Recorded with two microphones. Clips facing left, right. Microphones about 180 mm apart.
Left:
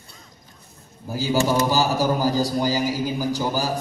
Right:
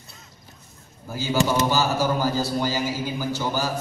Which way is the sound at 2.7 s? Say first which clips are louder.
Left 3 dB; 35° left (ahead or behind).